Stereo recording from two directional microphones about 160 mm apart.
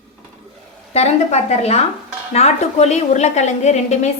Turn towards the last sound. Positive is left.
turn(degrees=45)  # may be behind; listen again after turning